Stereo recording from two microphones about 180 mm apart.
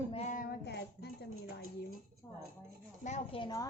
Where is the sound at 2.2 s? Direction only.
15° left (ahead or behind).